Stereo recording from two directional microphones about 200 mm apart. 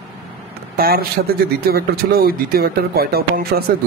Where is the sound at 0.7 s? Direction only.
50° right (ahead or behind).